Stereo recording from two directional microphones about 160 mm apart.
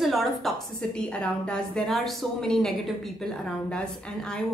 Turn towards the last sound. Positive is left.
turn(degrees=5)  # may be behind; listen again after turning